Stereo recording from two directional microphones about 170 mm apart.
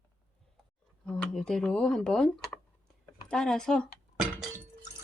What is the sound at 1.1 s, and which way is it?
Speech, 5° left (ahead or behind).